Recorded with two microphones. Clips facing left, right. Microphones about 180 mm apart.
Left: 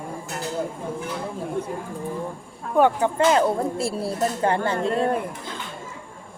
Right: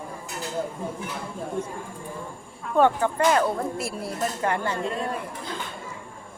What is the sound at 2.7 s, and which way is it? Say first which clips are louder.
Speech: left 2 dB; 15° left (ahead or behind).